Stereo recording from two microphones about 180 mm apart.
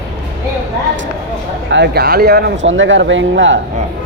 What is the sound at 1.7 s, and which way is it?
Speech, 70° right (ahead or behind).